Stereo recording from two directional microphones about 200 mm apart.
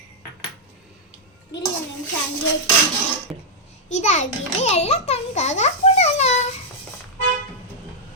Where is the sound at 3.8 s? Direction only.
35° left (ahead or behind).